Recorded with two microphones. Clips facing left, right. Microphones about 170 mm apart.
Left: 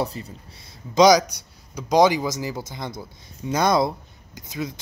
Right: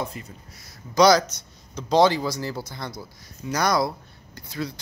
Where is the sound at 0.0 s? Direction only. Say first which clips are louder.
Left 5 dB; 35° left (ahead or behind).